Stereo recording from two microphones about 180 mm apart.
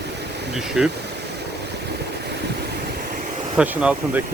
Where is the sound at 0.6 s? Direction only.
Centre (ahead or behind).